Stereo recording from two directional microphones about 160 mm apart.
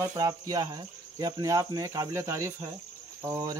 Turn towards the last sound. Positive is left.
turn(degrees=-20)  # may be behind; listen again after turning